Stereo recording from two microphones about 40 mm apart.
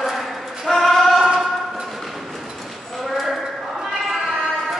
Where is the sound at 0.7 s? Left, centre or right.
Centre.